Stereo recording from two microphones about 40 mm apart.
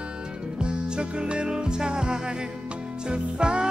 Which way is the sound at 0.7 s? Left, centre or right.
Right.